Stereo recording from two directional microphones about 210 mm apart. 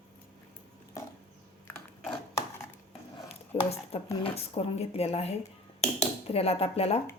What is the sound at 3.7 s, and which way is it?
Speech, 30° left (ahead or behind).